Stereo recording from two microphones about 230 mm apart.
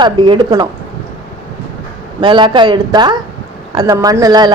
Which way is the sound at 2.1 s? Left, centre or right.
Centre.